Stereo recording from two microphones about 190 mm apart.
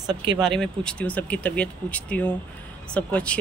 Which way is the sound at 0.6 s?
5° left (ahead or behind).